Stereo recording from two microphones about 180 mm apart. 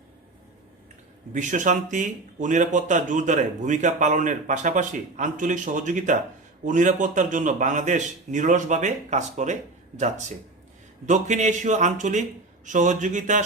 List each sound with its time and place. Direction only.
1.3 s speech: 45° right (ahead or behind)
11.0 s speech: 40° right (ahead or behind)